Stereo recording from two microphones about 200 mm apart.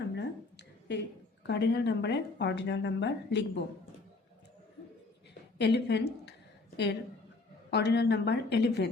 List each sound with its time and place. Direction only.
0.2 s a sound: 60° left (ahead or behind)
1.5 s speech: 60° left (ahead or behind)
5.5 s a woman's voice: 55° left (ahead or behind)
7.7 s speech: 55° left (ahead or behind)